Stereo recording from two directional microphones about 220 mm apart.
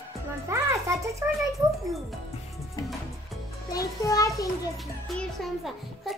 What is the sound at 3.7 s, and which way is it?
Speech, 15° left (ahead or behind).